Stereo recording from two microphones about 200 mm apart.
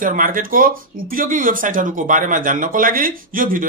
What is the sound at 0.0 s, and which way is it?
Speech, 45° right (ahead or behind).